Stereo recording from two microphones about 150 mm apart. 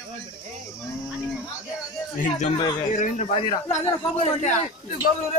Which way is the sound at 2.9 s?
55° left (ahead or behind).